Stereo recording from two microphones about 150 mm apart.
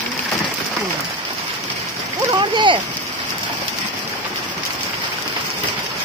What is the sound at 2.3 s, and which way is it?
Speech, 30° right (ahead or behind).